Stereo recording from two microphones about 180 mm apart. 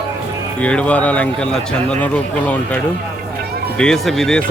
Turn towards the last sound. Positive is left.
turn(degrees=0)  # may be behind; listen again after turning